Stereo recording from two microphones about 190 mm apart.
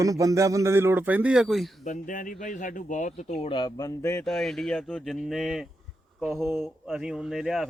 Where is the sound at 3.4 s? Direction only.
25° left (ahead or behind).